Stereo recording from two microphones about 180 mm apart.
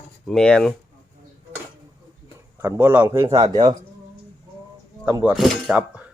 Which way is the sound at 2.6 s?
15° right (ahead or behind).